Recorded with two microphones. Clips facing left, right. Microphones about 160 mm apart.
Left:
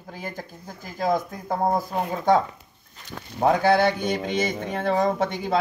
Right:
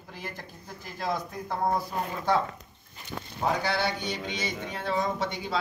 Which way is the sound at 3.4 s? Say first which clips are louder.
Left 9 dB; 50° left (ahead or behind).